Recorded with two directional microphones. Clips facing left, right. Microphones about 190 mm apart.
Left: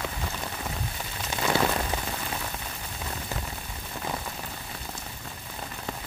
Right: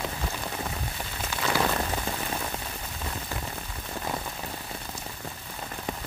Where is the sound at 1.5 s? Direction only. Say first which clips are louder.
Left 1 dB; 25° left (ahead or behind).